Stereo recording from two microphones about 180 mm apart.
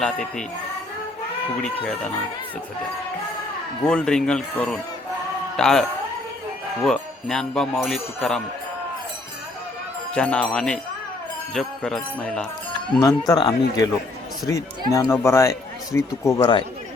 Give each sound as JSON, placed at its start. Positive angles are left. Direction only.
{"t": 0.0, "sound": "speech", "side_deg": 5}
{"t": 3.8, "sound": "speech", "side_deg": 5}
{"t": 6.8, "sound": "speech", "side_deg": 0}
{"t": 10.2, "sound": "speech", "side_deg": 5}
{"t": 13.0, "sound": "speech", "side_deg": 20}